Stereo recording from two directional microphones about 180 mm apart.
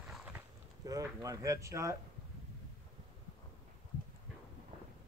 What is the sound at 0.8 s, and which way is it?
Speech, 20° right (ahead or behind).